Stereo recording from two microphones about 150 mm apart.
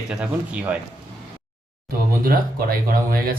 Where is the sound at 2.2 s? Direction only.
75° right (ahead or behind).